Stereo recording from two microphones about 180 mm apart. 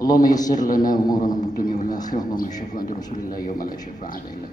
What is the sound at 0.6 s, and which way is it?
Speech, 50° left (ahead or behind).